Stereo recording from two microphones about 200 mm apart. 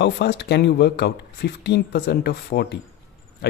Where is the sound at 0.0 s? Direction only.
55° left (ahead or behind).